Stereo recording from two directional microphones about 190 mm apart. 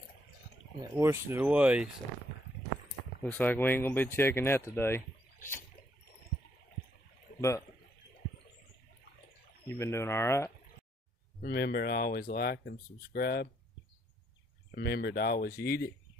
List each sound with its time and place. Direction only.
0.7 s speech: 15° right (ahead or behind)
3.2 s speech: 10° left (ahead or behind)
7.3 s speech: 15° left (ahead or behind)
9.7 s speech: 15° left (ahead or behind)
11.4 s speech: 60° left (ahead or behind)
14.7 s speech: 60° left (ahead or behind)